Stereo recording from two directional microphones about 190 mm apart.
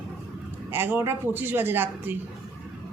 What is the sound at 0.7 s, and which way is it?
Speech, 10° right (ahead or behind).